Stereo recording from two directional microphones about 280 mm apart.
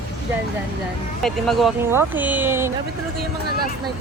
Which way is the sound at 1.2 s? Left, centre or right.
Centre.